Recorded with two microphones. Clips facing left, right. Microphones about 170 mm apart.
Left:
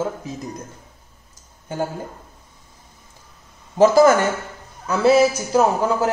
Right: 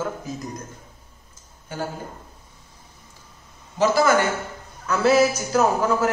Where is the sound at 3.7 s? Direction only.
45° left (ahead or behind).